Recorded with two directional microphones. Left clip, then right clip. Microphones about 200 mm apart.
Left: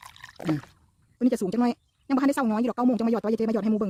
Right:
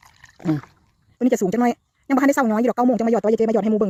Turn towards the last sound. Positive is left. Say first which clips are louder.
# right 8 dB
turn(degrees=-10)  # may be behind; listen again after turning